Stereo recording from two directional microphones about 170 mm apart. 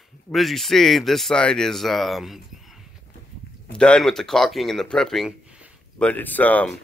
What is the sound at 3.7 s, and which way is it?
Speech, 5° left (ahead or behind).